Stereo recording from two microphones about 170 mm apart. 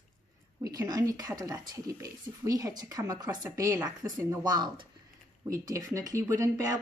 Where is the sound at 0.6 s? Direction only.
20° right (ahead or behind).